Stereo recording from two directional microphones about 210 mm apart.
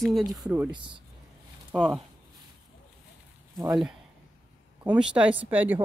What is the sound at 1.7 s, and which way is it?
Speech, 5° right (ahead or behind).